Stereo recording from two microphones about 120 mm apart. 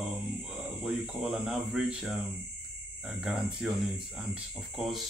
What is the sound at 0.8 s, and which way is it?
A man's voice, 5° right (ahead or behind).